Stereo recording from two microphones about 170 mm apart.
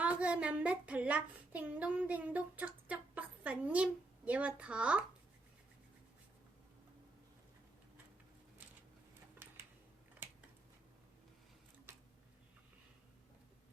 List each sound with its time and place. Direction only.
0.0 s a child's voice: 10° right (ahead or behind)